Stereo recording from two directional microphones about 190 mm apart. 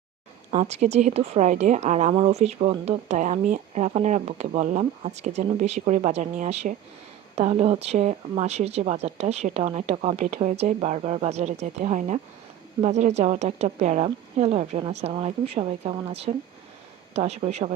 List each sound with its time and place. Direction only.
0.5 s speech: 35° right (ahead or behind)